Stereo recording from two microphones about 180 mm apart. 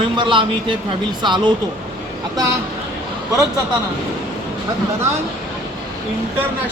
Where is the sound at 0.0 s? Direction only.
30° right (ahead or behind).